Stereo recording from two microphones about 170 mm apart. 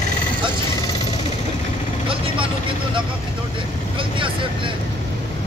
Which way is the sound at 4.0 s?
30° right (ahead or behind).